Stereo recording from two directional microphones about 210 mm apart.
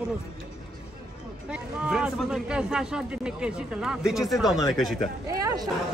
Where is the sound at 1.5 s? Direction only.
5° right (ahead or behind).